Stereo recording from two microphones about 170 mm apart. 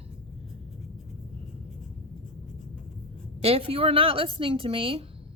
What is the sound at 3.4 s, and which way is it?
Speech, 35° right (ahead or behind).